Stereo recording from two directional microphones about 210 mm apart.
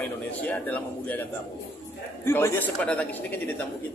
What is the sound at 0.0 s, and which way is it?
A man's voice, 5° left (ahead or behind).